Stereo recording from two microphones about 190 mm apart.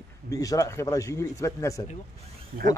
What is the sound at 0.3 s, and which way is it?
Speech, 15° left (ahead or behind).